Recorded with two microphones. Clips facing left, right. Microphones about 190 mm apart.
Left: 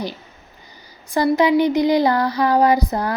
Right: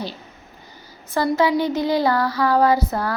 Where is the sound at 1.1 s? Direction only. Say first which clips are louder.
Left 3 dB; 15° left (ahead or behind).